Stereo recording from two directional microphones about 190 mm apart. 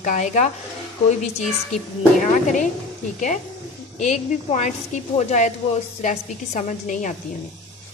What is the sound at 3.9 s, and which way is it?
Dishes, 40° left (ahead or behind).